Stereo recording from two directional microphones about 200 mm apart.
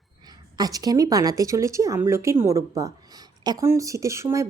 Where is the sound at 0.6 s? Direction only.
20° right (ahead or behind).